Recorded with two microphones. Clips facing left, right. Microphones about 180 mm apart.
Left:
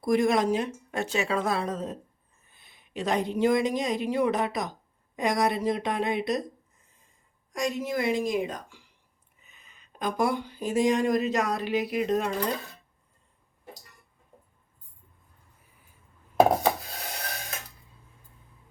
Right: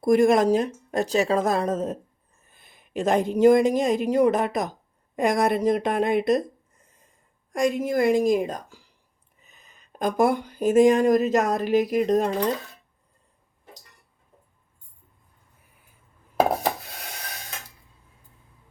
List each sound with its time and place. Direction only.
0.0 s speech: 50° right (ahead or behind)
7.5 s speech: 55° right (ahead or behind)